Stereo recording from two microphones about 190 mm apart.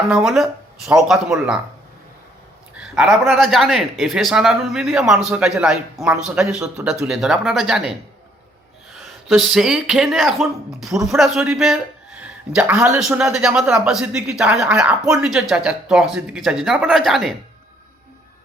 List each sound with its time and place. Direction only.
0.1 s speech: centre (ahead or behind)
2.7 s speech: centre (ahead or behind)